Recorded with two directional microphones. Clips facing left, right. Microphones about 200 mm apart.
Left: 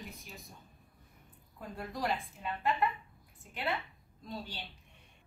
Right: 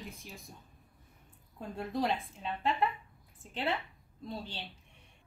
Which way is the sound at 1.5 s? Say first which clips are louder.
Right 5 dB; 25° right (ahead or behind).